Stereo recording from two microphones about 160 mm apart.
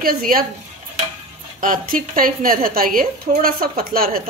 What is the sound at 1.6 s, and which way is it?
A woman's voice, 60° right (ahead or behind).